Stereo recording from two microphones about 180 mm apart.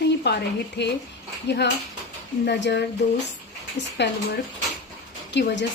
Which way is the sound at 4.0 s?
75° left (ahead or behind).